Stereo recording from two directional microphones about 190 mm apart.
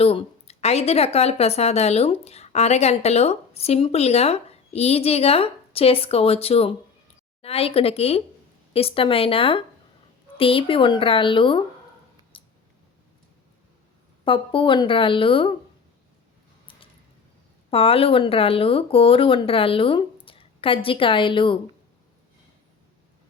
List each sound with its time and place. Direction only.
0.0 s speech: 30° left (ahead or behind)
12.3 s scissors: 25° left (ahead or behind)
14.3 s speech: 25° left (ahead or behind)
17.7 s speech: 30° left (ahead or behind)